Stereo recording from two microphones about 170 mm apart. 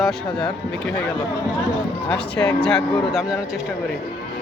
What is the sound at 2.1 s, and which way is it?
Speech, 5° left (ahead or behind).